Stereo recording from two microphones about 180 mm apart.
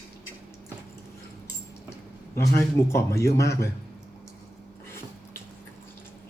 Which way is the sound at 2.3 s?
15° left (ahead or behind).